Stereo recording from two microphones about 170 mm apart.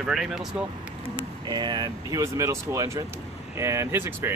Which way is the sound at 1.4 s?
25° right (ahead or behind).